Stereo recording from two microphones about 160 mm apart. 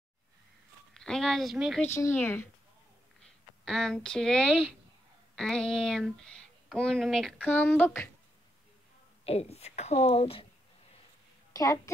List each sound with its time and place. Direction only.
0.9 s speech: 5° left (ahead or behind)
1.8 s speech: 15° left (ahead or behind)
9.2 s a woman's voice: 40° left (ahead or behind)
11.5 s a woman's voice: 20° left (ahead or behind)